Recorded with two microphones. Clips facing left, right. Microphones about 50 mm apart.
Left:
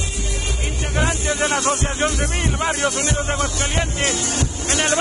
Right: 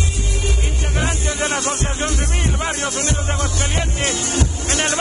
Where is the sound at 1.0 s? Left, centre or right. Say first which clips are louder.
Left 2 dB; centre.